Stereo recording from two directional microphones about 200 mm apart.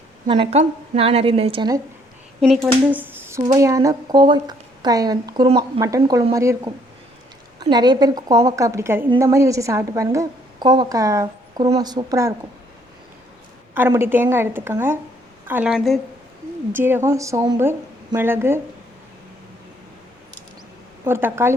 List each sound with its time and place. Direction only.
0.3 s speech: 25° right (ahead or behind)
2.6 s a woman's voice: 10° right (ahead or behind)
13.7 s a woman's voice: 10° right (ahead or behind)
16.7 s a woman's voice: 10° right (ahead or behind)
21.0 s a woman's voice: 10° right (ahead or behind)